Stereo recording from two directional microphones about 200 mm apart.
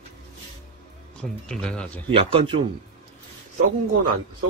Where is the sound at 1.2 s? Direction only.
5° left (ahead or behind).